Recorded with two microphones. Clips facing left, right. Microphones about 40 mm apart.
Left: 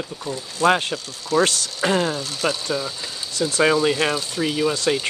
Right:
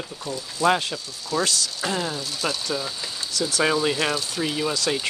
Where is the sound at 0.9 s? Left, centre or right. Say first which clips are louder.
Left 6 dB; left.